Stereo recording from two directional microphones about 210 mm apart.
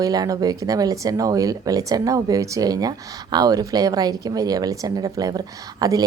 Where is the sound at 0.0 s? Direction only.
15° right (ahead or behind).